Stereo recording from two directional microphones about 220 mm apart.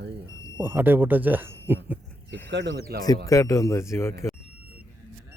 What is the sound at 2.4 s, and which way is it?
Speech, 55° right (ahead or behind).